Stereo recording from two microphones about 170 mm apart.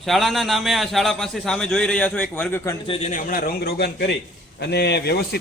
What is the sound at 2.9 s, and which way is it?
A man's voice, 40° left (ahead or behind).